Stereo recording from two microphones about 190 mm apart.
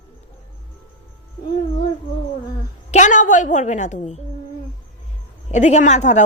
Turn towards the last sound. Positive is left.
turn(degrees=40)  # may be behind; listen again after turning